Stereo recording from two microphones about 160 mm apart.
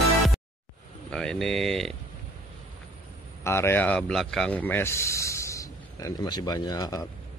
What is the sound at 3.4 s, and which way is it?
Speech, 15° left (ahead or behind).